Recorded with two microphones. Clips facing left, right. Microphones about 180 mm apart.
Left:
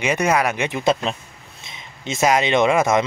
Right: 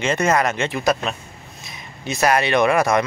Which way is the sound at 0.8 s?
25° left (ahead or behind).